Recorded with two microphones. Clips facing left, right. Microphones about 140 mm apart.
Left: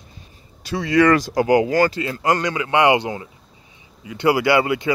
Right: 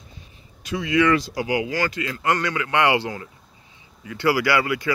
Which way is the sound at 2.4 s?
20° left (ahead or behind).